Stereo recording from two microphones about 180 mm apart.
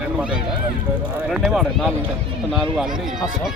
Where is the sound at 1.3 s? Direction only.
Centre (ahead or behind).